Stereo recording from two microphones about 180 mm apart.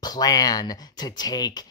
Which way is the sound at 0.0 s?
20° left (ahead or behind).